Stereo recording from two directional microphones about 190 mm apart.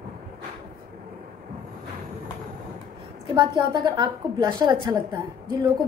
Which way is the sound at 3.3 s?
20° right (ahead or behind).